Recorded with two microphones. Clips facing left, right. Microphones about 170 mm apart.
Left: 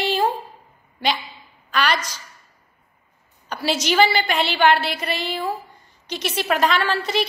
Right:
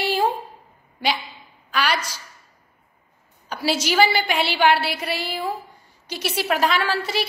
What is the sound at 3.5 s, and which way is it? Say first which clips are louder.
A woman's voice: left 1 dB; 5° right (ahead or behind).